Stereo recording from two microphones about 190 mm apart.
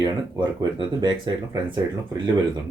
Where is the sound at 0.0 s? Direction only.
25° right (ahead or behind).